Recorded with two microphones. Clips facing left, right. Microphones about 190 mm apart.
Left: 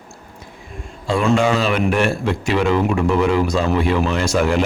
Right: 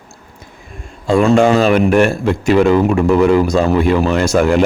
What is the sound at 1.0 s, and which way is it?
Speech, 45° right (ahead or behind).